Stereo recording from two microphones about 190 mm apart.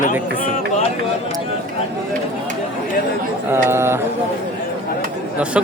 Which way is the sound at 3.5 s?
15° right (ahead or behind).